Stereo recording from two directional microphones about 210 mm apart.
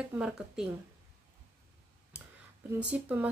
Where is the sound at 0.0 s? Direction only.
5° right (ahead or behind).